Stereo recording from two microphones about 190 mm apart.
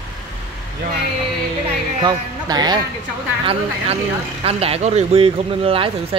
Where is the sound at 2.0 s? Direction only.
20° right (ahead or behind).